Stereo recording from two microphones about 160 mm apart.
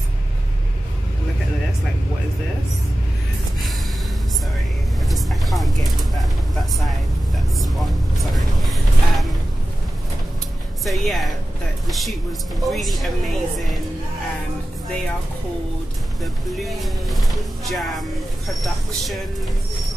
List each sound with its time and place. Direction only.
5.0 s vehicle: centre (ahead or behind)
8.2 s vehicle: centre (ahead or behind)
10.9 s music: centre (ahead or behind)
11.9 s a woman's voice: centre (ahead or behind)
16.2 s a woman's voice: centre (ahead or behind)